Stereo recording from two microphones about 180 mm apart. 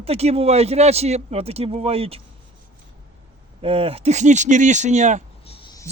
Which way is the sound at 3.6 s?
35° right (ahead or behind).